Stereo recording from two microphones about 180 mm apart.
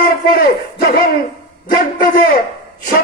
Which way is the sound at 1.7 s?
55° left (ahead or behind).